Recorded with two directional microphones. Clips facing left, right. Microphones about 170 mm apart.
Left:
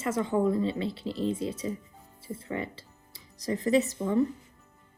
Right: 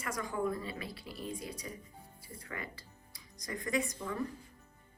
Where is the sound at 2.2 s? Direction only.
25° left (ahead or behind).